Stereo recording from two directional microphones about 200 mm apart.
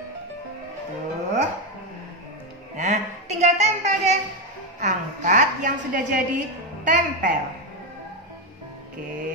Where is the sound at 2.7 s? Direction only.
35° right (ahead or behind).